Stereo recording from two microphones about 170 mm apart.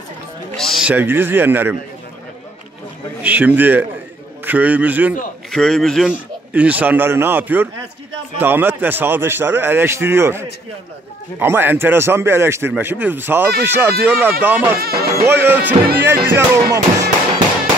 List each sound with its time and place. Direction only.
0.6 s a man's voice: centre (ahead or behind)
3.2 s a man's voice: 10° right (ahead or behind)
5.5 s a man's voice: 5° left (ahead or behind)
14.8 s speech: 60° right (ahead or behind)
15.4 s a man's voice: 10° right (ahead or behind)